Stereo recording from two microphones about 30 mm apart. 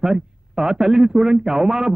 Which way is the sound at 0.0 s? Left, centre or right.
Centre.